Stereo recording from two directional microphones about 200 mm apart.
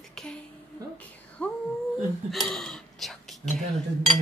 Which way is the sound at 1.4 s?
5° left (ahead or behind).